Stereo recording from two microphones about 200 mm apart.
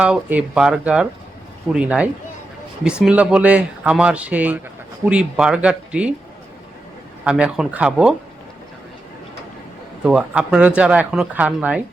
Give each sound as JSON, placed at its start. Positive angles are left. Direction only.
{"t": 0.0, "sound": "speech", "side_deg": -5}
{"t": 7.3, "sound": "speech", "side_deg": -5}
{"t": 10.0, "sound": "speech", "side_deg": -5}